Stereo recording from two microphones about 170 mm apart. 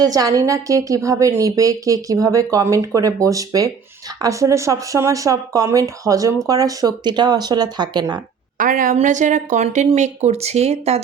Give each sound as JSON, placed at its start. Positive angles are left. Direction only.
{"t": 0.0, "sound": "a woman's voice", "side_deg": -20}
{"t": 8.5, "sound": "speech", "side_deg": -55}